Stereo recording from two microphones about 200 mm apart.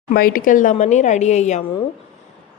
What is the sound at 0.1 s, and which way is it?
A woman's voice, 45° left (ahead or behind).